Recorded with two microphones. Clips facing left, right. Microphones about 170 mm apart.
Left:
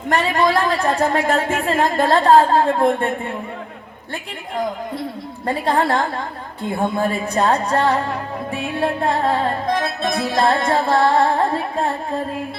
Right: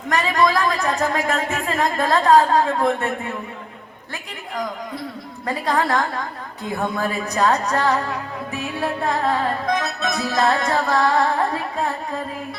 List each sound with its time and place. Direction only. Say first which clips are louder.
0.1 s a woman's voice: left 2 dB; 30° left (ahead or behind)
4.1 s music: left 4 dB; 30° left (ahead or behind)